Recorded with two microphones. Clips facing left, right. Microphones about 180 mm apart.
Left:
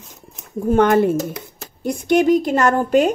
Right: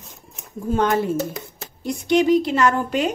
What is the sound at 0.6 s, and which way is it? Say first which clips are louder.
A woman's voice: left 6 dB; 60° left (ahead or behind).